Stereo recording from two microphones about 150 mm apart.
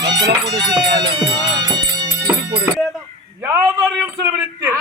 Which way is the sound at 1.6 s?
30° right (ahead or behind).